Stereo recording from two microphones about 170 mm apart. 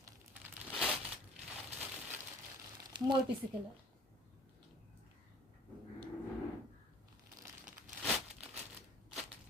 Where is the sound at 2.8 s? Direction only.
25° right (ahead or behind).